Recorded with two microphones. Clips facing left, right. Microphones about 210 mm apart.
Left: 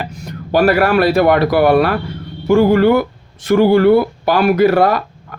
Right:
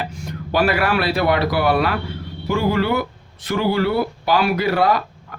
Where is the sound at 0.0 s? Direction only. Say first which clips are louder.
Left 2 dB; 40° left (ahead or behind).